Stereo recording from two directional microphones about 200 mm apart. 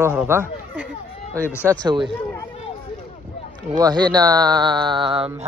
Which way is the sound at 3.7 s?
20° right (ahead or behind).